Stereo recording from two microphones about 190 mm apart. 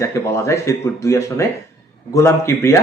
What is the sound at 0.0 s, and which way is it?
Speech, 15° left (ahead or behind).